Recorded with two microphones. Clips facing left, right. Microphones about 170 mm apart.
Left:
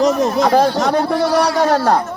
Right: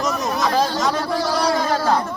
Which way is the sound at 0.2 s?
55° left (ahead or behind).